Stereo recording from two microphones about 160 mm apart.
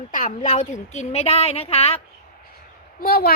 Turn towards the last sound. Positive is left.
turn(degrees=70)  # may be behind; listen again after turning